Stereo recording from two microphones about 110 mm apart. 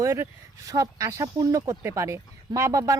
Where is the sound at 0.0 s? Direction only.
30° right (ahead or behind).